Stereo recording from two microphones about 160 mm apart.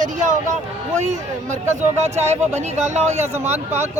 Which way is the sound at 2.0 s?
45° right (ahead or behind).